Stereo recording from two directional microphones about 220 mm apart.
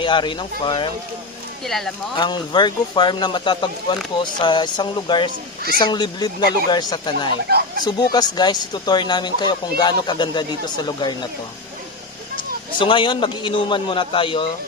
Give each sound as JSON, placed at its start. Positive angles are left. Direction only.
{"t": 0.0, "sound": "speech", "side_deg": 20}
{"t": 2.1, "sound": "speech", "side_deg": 20}
{"t": 12.7, "sound": "speech", "side_deg": 20}